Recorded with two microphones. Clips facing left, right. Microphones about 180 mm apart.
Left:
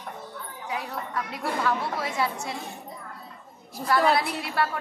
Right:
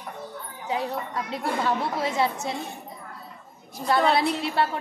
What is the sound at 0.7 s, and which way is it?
A woman's voice, 25° right (ahead or behind).